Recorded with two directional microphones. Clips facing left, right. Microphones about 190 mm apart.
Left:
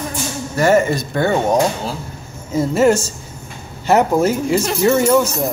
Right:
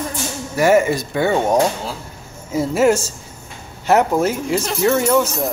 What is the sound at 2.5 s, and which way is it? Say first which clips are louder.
Speech: left 1 dB; 5° right (ahead or behind).